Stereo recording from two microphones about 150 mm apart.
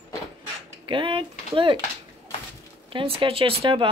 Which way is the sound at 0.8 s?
35° right (ahead or behind).